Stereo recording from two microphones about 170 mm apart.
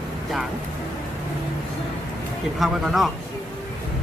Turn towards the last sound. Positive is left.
turn(degrees=0)  # may be behind; listen again after turning